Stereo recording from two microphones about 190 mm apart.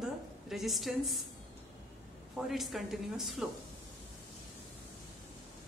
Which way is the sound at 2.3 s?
Centre (ahead or behind).